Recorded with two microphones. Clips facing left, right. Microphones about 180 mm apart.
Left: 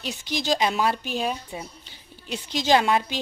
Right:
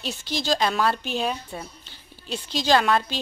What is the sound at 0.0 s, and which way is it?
A woman's voice, 15° left (ahead or behind).